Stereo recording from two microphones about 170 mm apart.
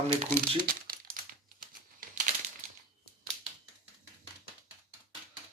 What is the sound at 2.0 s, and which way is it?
Crumpling, 45° right (ahead or behind).